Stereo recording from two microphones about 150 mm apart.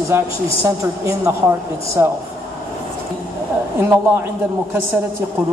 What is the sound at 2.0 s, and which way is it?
Speech, 15° right (ahead or behind).